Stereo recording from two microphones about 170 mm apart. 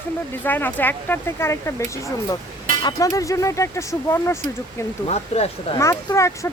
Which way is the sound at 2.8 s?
20° left (ahead or behind).